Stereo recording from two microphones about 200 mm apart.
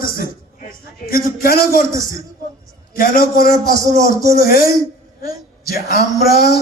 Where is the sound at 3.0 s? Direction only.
45° left (ahead or behind).